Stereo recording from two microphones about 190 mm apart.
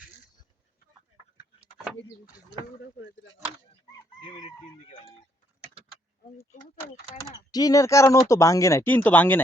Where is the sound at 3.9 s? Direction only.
25° left (ahead or behind).